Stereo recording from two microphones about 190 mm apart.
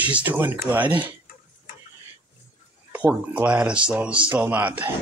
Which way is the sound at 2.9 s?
10° right (ahead or behind).